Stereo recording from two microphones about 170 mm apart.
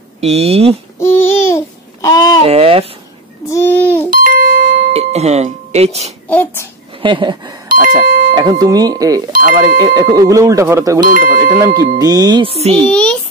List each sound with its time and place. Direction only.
0.2 s speech: 40° right (ahead or behind)
0.9 s babbling: 15° left (ahead or behind)
2.4 s speech: 35° right (ahead or behind)
3.4 s a sound: 15° left (ahead or behind)
4.1 s doorbell: 55° right (ahead or behind)
4.9 s speech: 40° right (ahead or behind)
6.2 s a child's voice: 10° left (ahead or behind)
7.0 s speech: 30° right (ahead or behind)
7.6 s doorbell: 55° right (ahead or behind)
8.4 s speech: 25° right (ahead or behind)
11.0 s speech: 55° right (ahead or behind)
11.5 s speech: 20° right (ahead or behind); by 12.8 s 35° right (ahead or behind)
12.8 s a child's voice: 5° left (ahead or behind)